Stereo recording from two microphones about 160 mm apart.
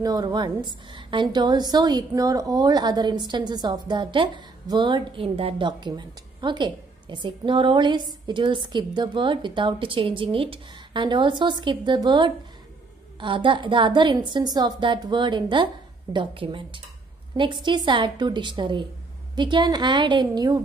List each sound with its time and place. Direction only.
0.0 s a woman's voice: 25° right (ahead or behind)